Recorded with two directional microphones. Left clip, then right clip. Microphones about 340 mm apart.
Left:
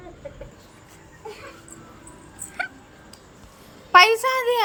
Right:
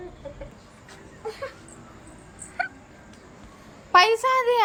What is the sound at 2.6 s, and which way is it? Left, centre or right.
Dog, centre.